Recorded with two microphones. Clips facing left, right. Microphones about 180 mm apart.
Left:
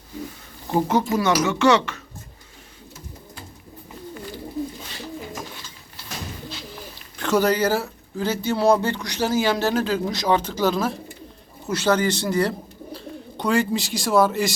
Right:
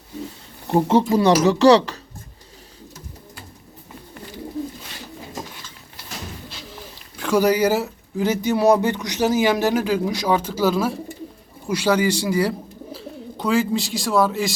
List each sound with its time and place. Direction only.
0.9 s speech: 30° right (ahead or behind)
7.2 s speech: 10° right (ahead or behind)